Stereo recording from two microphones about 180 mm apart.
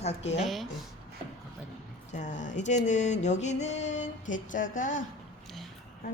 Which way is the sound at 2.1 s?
45° left (ahead or behind).